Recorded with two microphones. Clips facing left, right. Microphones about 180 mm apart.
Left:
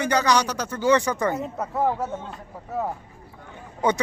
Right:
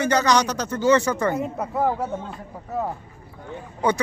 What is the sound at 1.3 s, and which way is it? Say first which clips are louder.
Speech: right 2 dB; 10° right (ahead or behind).